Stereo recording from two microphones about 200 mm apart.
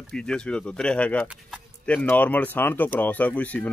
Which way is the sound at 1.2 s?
5° right (ahead or behind).